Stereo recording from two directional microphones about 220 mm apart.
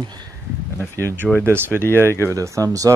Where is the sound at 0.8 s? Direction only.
10° left (ahead or behind).